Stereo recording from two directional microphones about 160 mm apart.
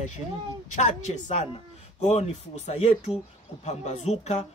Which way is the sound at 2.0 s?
45° left (ahead or behind).